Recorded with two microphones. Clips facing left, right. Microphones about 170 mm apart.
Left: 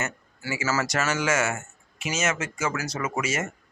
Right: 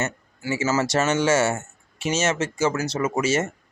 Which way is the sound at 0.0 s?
25° right (ahead or behind).